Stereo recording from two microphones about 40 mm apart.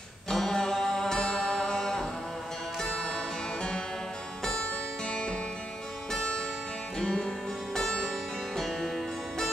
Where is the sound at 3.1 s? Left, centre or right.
Centre.